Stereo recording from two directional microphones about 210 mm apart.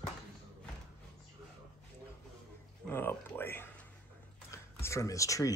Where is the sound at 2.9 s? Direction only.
10° left (ahead or behind).